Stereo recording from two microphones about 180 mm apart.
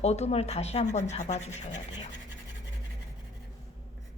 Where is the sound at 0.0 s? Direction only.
35° left (ahead or behind).